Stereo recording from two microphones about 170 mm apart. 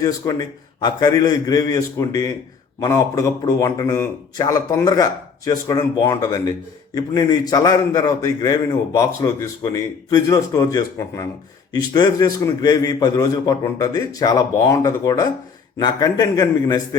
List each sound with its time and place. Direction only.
0.0 s a man's voice: 20° left (ahead or behind)